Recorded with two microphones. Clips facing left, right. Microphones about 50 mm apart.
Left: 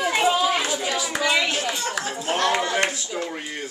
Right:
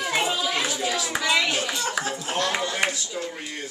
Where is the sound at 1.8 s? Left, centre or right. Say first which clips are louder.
Even; centre.